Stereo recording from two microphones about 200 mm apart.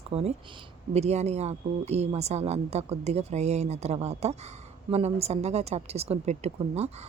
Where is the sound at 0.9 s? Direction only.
35° right (ahead or behind).